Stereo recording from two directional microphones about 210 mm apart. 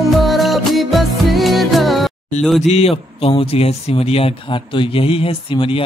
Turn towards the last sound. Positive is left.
turn(degrees=25)  # may be behind; listen again after turning